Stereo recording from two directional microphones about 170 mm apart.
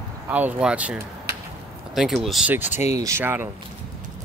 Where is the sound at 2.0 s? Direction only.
Centre (ahead or behind).